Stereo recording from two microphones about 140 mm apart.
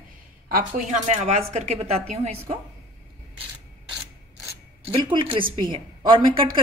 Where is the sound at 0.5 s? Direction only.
85° right; by 2.4 s 50° right (ahead or behind).